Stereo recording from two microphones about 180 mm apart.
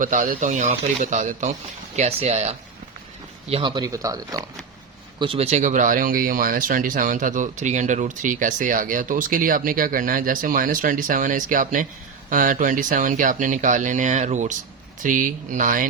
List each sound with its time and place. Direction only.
0.0 s speech: 45° right (ahead or behind)
3.5 s speech: 25° right (ahead or behind)
5.2 s speech: 30° right (ahead or behind); by 15.9 s 50° right (ahead or behind)